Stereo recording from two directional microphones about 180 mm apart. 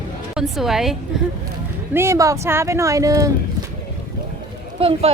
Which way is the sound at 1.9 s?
15° right (ahead or behind).